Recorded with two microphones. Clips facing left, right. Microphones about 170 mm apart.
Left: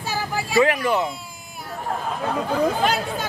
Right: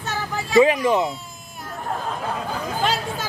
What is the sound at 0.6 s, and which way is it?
Speech, 20° right (ahead or behind).